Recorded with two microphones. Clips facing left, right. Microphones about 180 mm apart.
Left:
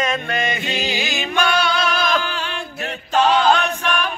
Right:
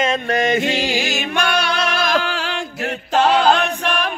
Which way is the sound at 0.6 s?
80° right.